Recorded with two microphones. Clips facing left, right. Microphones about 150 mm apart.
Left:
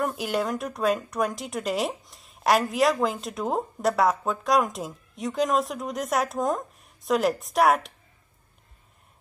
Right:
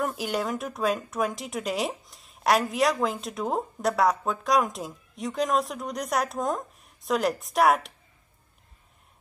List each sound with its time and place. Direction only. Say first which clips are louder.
0.0 s a woman's voice: left 2 dB; centre (ahead or behind)